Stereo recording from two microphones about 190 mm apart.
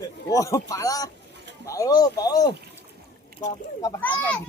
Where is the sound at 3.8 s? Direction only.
15° left (ahead or behind).